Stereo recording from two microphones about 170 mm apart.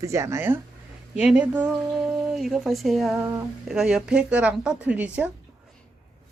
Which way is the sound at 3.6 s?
5° right (ahead or behind).